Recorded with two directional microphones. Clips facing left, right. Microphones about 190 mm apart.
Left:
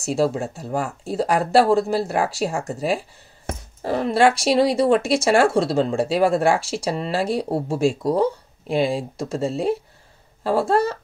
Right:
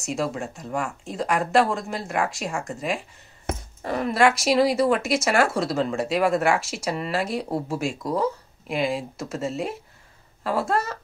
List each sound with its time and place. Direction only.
0.0 s speech: 30° left (ahead or behind)